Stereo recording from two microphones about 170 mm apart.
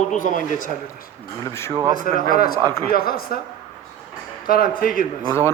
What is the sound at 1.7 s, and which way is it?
Speech, 20° right (ahead or behind).